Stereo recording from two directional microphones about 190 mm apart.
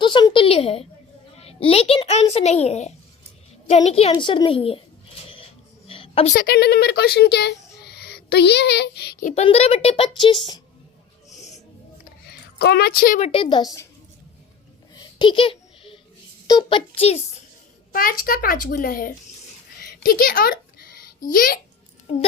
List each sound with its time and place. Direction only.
0.0 s a woman's voice: 25° left (ahead or behind)
5.9 s a sound: 30° left (ahead or behind)
6.3 s speech: 55° left (ahead or behind)
9.2 s a child's voice: 35° left (ahead or behind)
12.3 s a woman's voice: 55° left (ahead or behind)
13.1 s a woman's voice: 30° left (ahead or behind)
14.9 s a sound: 25° left (ahead or behind)
16.5 s a child's voice: 25° left (ahead or behind)
17.9 s a woman's voice: 50° left (ahead or behind)
19.8 s a sound: 50° left (ahead or behind)
22.1 s a child's voice: 30° left (ahead or behind)